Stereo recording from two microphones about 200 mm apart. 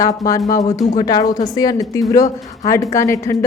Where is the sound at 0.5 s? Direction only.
15° left (ahead or behind).